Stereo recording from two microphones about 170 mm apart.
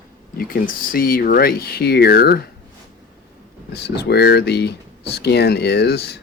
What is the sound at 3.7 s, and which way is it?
Speech, 75° left (ahead or behind).